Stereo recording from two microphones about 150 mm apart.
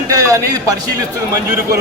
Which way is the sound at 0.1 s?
20° right (ahead or behind).